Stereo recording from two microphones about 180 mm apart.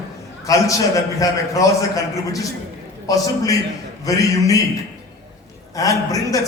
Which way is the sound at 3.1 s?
20° left (ahead or behind).